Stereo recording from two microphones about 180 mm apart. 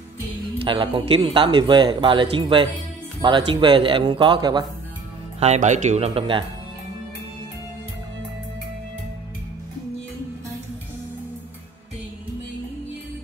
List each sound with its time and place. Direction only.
0.6 s a man's voice: 30° right (ahead or behind)
5.4 s speech: 40° right (ahead or behind)